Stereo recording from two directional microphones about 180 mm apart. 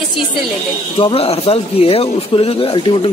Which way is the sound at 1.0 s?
30° left (ahead or behind).